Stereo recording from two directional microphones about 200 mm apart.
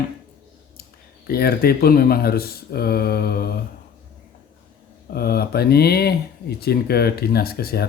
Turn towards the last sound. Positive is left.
turn(degrees=50)  # may be behind; listen again after turning